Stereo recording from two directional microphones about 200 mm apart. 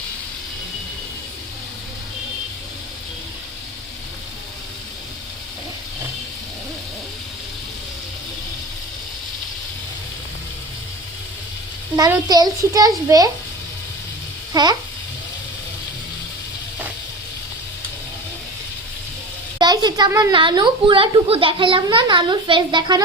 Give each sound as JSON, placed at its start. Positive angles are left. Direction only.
{"t": 11.9, "sound": "a child's voice", "side_deg": -15}
{"t": 14.5, "sound": "speech", "side_deg": -20}
{"t": 19.5, "sound": "a woman's voice", "side_deg": -20}